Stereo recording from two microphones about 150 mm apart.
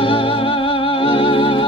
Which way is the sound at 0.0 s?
35° left (ahead or behind).